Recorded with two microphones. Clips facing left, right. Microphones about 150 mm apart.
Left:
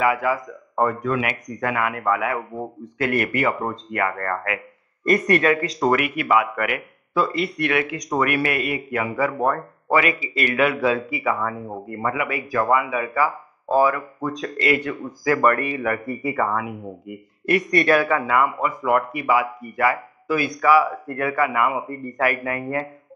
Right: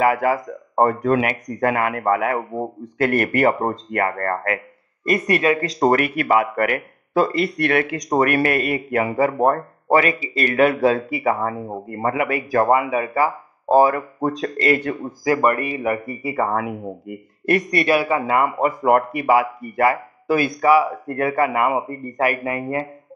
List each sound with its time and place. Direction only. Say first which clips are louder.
0.0 s speech: right 3 dB; 45° right (ahead or behind)
15.2 s speech: right 1 dB; 15° right (ahead or behind)
16.2 s speech: right 1 dB; 30° right (ahead or behind)
16.5 s speech: right 3 dB; 45° right (ahead or behind)
17.7 s speech: left 2 dB; 10° right (ahead or behind)
18.2 s speech: right 2 dB; 35° right (ahead or behind)
22.0 s speech: left 1 dB; 20° right (ahead or behind)